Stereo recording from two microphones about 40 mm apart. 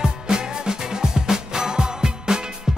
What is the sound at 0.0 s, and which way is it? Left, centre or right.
Music, centre.